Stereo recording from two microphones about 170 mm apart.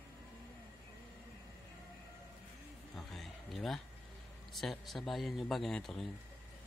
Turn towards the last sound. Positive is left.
turn(degrees=0)  # may be behind; listen again after turning